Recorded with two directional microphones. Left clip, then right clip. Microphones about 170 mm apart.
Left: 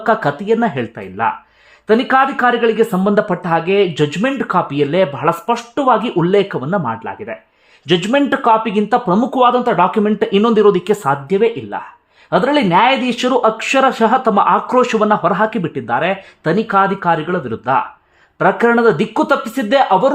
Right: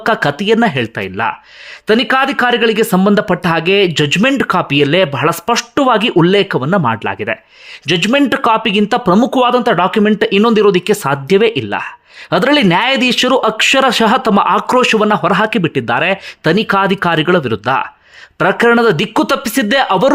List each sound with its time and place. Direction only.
0.0 s speech: 15° right (ahead or behind)
11.3 s speech: 30° right (ahead or behind)